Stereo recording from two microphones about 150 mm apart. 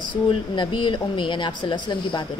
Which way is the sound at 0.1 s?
35° left (ahead or behind).